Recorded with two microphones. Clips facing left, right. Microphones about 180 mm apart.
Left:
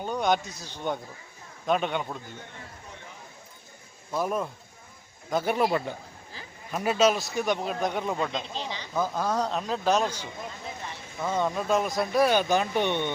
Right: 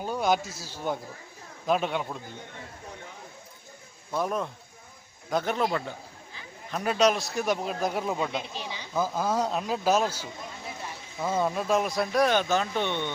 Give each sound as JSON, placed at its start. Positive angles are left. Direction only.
{"t": 0.0, "sound": "speech", "side_deg": -5}
{"t": 4.1, "sound": "a man's voice", "side_deg": 5}